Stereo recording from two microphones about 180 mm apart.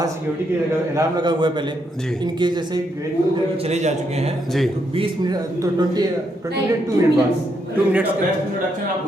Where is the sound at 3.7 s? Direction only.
40° right (ahead or behind).